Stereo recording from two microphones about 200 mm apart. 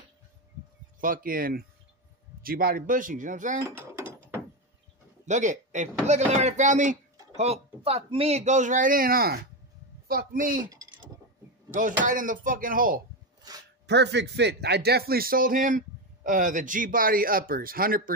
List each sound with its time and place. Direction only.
1.0 s speech: 45° right (ahead or behind)
3.9 s ratchet: 10° right (ahead or behind)
5.2 s speech: 35° right (ahead or behind)
10.6 s speech: 15° right (ahead or behind)
11.7 s speech: 40° right (ahead or behind)
13.4 s speech: 20° right (ahead or behind)
13.8 s speech: 60° right (ahead or behind)